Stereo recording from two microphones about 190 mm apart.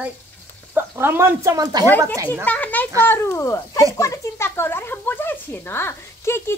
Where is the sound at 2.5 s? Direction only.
10° left (ahead or behind).